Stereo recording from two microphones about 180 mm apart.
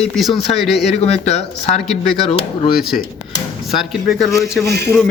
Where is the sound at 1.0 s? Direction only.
35° left (ahead or behind).